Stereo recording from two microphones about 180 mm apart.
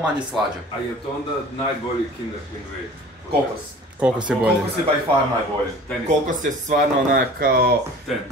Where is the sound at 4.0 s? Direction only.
5° right (ahead or behind).